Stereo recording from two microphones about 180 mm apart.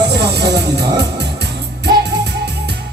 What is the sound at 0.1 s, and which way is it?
Music, 70° right (ahead or behind).